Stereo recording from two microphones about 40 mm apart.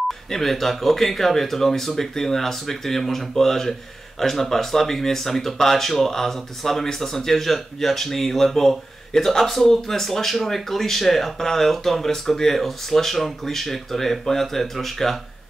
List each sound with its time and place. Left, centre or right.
0.3 s speech: centre